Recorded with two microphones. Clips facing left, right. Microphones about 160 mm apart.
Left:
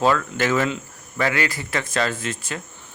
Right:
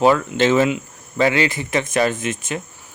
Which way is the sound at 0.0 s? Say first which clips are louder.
Right 5 dB; 20° right (ahead or behind).